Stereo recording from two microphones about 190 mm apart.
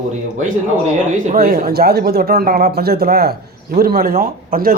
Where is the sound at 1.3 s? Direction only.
50° right (ahead or behind).